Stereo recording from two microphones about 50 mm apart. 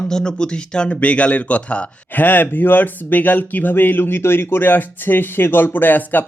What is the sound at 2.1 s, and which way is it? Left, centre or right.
Speech, left.